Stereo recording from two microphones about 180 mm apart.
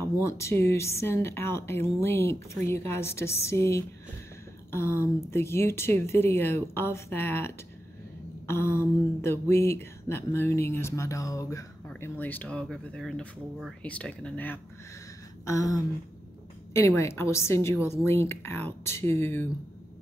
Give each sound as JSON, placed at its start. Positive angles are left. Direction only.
{"t": 0.3, "sound": "speech", "side_deg": 15}